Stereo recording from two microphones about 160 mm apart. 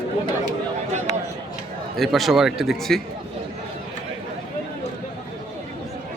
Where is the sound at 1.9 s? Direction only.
Centre (ahead or behind).